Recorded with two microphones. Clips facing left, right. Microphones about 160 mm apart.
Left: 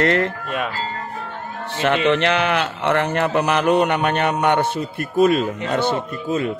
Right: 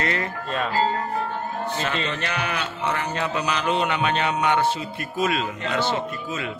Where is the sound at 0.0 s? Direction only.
65° left (ahead or behind).